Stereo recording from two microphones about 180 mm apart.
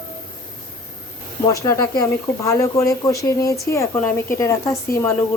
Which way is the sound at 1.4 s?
20° left (ahead or behind).